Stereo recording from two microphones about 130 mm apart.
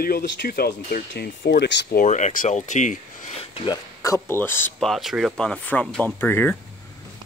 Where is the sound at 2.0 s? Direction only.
65° left (ahead or behind).